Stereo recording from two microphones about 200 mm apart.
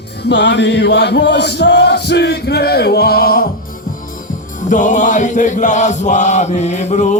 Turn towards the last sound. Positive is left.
turn(degrees=35)  # may be behind; listen again after turning